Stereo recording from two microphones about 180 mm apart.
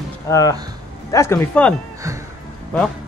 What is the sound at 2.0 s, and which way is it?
Music, 15° right (ahead or behind).